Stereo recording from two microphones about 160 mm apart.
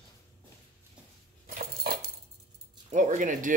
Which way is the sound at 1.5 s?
70° right (ahead or behind).